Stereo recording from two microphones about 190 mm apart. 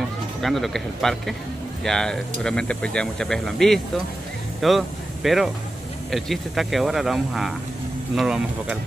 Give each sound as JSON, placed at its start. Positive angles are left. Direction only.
{"t": 0.4, "sound": "speech", "side_deg": 0}